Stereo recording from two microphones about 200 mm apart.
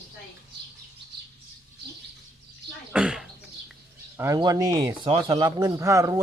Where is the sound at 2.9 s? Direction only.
5° right (ahead or behind).